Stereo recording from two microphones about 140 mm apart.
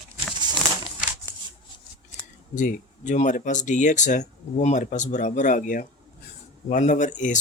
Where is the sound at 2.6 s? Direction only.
65° left (ahead or behind).